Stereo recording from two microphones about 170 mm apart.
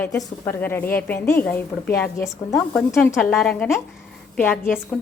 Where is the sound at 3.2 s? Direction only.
5° left (ahead or behind).